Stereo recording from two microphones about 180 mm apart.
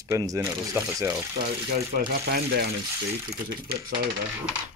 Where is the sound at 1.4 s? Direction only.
55° right (ahead or behind).